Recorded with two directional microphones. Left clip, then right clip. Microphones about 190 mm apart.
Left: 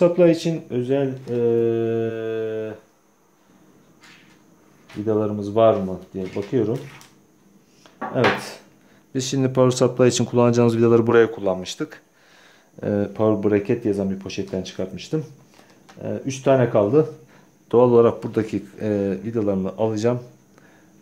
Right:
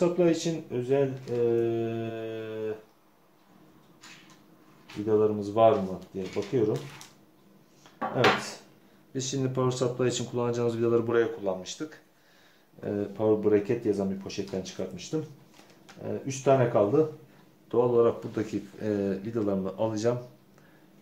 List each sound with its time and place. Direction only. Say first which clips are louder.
0.0 s speech: left 9 dB; 45° left (ahead or behind)
5.0 s speech: left 2 dB; 35° left (ahead or behind)
8.2 s speech: left 4 dB; 45° left (ahead or behind)
17.6 s speech: left 8 dB; 55° left (ahead or behind); by 20.2 s 35° left (ahead or behind)